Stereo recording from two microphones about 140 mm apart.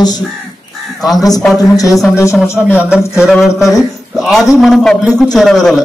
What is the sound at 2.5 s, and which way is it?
Speech, 15° left (ahead or behind).